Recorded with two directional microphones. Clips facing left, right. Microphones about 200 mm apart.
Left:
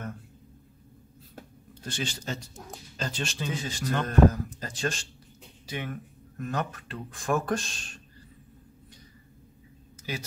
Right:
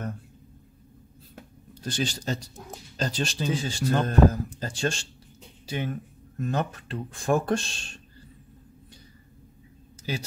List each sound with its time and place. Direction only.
1.9 s speech: 35° right (ahead or behind)
10.1 s speech: 30° right (ahead or behind)